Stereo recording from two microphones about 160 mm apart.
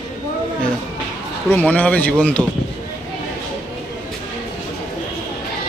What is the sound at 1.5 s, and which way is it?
Speech, 10° left (ahead or behind).